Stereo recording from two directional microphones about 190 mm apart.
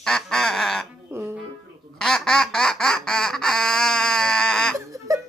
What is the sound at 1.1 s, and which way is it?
Music, 10° right (ahead or behind).